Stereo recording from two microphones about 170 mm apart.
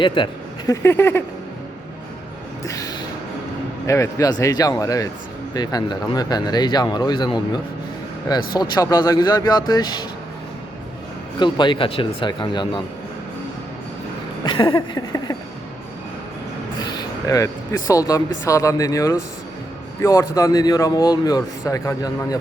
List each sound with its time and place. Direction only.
0.0 s speech: 30° left (ahead or behind)
0.7 s a sound: 15° left (ahead or behind)
2.6 s speech: 20° left (ahead or behind)
11.3 s speech: 25° left (ahead or behind)
14.4 s speech: 30° left (ahead or behind)
16.8 s speech: 20° left (ahead or behind)